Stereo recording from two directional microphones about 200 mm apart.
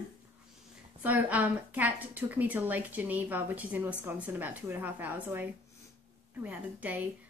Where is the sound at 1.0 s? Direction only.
10° right (ahead or behind).